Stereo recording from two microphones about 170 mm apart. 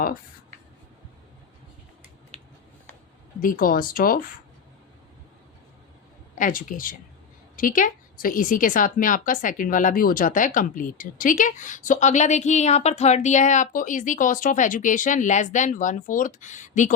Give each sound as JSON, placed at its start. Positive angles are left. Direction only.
{"t": 3.4, "sound": "speech", "side_deg": 55}
{"t": 6.3, "sound": "a woman's voice", "side_deg": 50}